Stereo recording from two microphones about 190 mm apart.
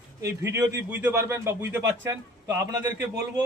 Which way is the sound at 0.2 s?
15° right (ahead or behind).